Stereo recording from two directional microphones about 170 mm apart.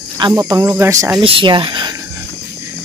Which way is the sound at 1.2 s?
30° right (ahead or behind).